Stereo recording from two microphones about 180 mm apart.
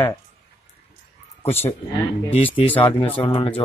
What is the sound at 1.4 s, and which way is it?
A man's voice, 35° left (ahead or behind).